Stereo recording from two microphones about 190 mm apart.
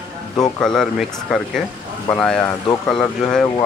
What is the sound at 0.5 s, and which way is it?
Speech, centre (ahead or behind).